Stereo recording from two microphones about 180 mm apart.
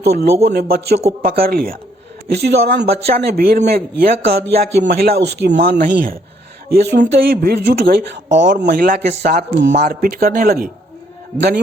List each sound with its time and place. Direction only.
0.0 s speech: 60° right (ahead or behind)
7.0 s speech: 45° right (ahead or behind)
7.5 s speech: 60° right (ahead or behind); by 8.4 s 85° right
8.5 s speech: 60° right (ahead or behind)